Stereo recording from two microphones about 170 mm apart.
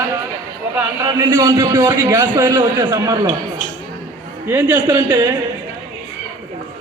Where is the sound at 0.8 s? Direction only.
15° right (ahead or behind).